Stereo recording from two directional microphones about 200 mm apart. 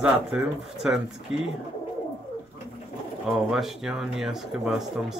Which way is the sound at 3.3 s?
Centre (ahead or behind).